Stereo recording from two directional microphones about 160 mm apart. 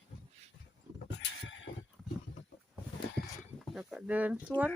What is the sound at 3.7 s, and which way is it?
Speech, 5° right (ahead or behind).